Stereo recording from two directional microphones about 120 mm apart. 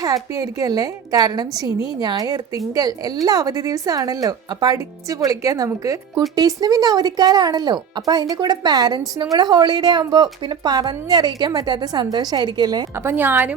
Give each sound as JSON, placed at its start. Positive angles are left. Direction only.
{"t": 0.0, "sound": "speech", "side_deg": -30}
{"t": 13.0, "sound": "a woman's voice", "side_deg": -20}